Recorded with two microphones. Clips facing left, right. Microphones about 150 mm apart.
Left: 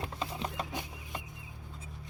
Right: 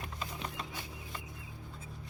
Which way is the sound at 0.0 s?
30° left (ahead or behind).